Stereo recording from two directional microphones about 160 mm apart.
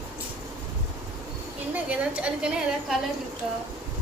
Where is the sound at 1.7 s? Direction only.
10° right (ahead or behind).